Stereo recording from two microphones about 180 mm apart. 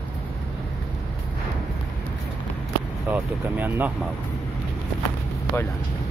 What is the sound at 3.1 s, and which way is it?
Speech, 10° right (ahead or behind).